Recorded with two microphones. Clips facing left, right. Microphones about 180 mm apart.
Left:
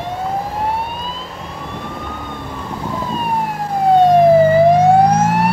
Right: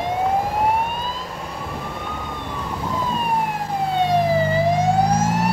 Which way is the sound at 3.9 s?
50° left (ahead or behind).